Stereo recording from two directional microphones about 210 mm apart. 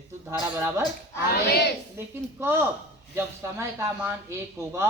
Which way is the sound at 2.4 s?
10° right (ahead or behind).